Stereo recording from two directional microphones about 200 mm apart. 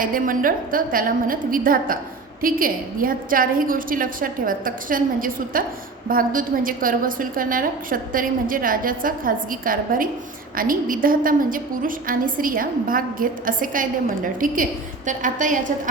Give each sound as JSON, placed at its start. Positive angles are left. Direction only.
{"t": 0.0, "sound": "a woman's voice", "side_deg": -45}